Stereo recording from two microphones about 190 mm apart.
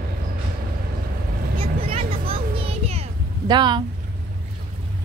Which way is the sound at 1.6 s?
30° right (ahead or behind).